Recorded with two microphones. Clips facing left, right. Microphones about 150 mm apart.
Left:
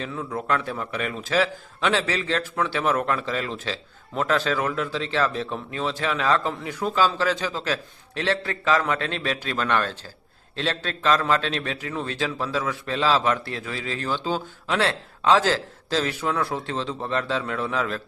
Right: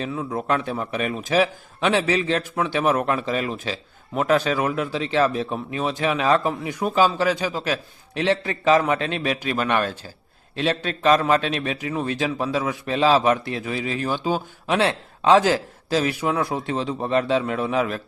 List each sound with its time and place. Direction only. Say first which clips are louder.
0.0 s a man's voice: right 3 dB; 20° right (ahead or behind)